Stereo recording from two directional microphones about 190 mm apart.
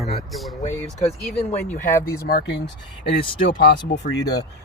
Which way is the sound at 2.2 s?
55° left (ahead or behind).